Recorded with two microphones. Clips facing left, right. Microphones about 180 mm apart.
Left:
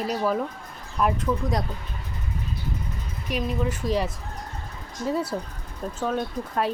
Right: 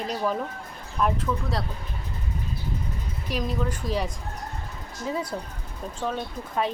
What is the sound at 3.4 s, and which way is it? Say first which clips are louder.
Speech: left 4 dB; 5° left (ahead or behind).